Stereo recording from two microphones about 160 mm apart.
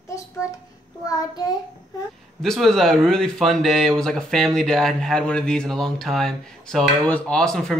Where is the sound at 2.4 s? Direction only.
Centre (ahead or behind).